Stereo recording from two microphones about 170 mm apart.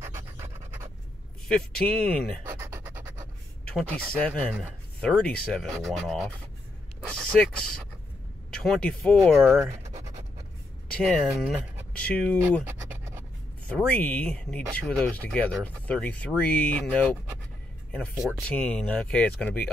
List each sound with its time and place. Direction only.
0.0 s pant: 15° right (ahead or behind)
1.5 s speech: 5° left (ahead or behind)
2.5 s a sound: 15° right (ahead or behind)
3.6 s a sound: 5° left (ahead or behind)
4.2 s speech: 5° left (ahead or behind)
9.6 s scratch: 20° right (ahead or behind)
11.0 s speech: 5° left (ahead or behind)
12.6 s scratch: 15° right (ahead or behind)
13.7 s speech: 5° left (ahead or behind)
18.1 s speech: 10° right (ahead or behind)
18.5 s speech: 5° left (ahead or behind)